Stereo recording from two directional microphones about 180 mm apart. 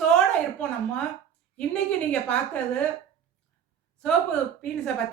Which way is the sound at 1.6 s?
5° left (ahead or behind).